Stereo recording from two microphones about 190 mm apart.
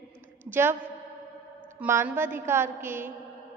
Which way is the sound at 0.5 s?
10° right (ahead or behind).